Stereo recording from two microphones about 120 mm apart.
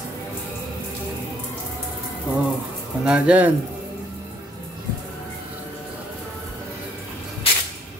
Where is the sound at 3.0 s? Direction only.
10° right (ahead or behind).